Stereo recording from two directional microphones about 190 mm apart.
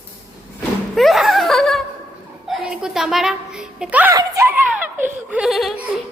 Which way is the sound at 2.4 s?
5° right (ahead or behind).